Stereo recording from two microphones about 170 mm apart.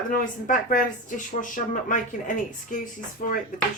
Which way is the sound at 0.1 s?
50° left (ahead or behind).